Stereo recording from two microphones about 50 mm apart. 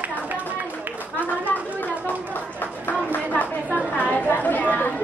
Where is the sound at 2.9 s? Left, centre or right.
Left.